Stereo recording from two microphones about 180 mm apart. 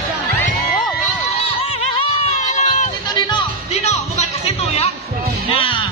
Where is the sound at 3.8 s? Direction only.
35° left (ahead or behind).